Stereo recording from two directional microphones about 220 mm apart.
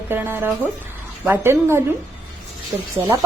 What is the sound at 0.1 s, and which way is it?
A woman's voice, 10° right (ahead or behind).